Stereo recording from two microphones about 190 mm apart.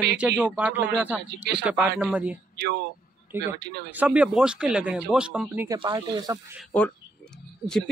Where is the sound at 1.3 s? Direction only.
60° right (ahead or behind).